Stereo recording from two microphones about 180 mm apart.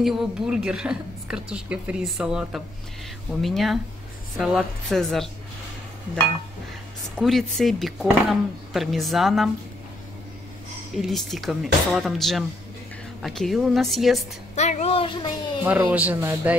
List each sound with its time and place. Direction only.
0.0 s speech: centre (ahead or behind)
7.2 s speech: centre (ahead or behind)
11.0 s speech: centre (ahead or behind)
14.5 s speech: 40° left (ahead or behind)
15.9 s a man's voice: 10° right (ahead or behind)